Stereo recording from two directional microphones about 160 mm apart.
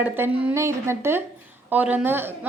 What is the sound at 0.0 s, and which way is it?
A woman's voice, 15° right (ahead or behind).